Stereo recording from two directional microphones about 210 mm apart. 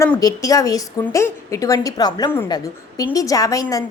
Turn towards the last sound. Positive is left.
turn(degrees=15)  # may be behind; listen again after turning